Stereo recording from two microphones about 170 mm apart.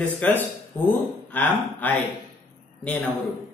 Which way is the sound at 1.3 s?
10° left (ahead or behind).